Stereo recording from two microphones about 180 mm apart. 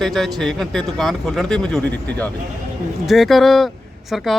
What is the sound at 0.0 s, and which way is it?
Speech, centre (ahead or behind).